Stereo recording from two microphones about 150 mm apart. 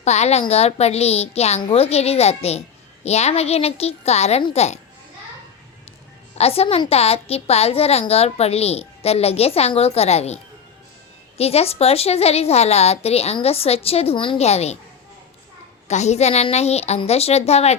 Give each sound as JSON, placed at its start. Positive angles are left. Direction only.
{"t": 0.0, "sound": "a woman's voice", "side_deg": 45}
{"t": 6.3, "sound": "a woman's voice", "side_deg": 40}
{"t": 15.9, "sound": "a woman's voice", "side_deg": 50}